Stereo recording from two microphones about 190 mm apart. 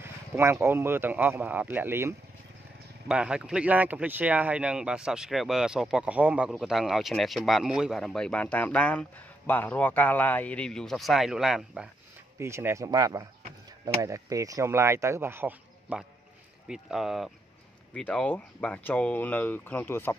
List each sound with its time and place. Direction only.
0.0 s speech: 15° right (ahead or behind)
12.4 s speech: 15° right (ahead or behind); by 20.2 s 10° left (ahead or behind)